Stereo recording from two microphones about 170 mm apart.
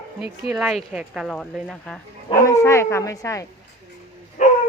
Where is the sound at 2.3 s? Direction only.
20° left (ahead or behind).